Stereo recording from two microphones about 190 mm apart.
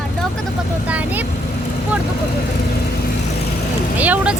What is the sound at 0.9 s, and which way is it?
Vehicle, 10° right (ahead or behind).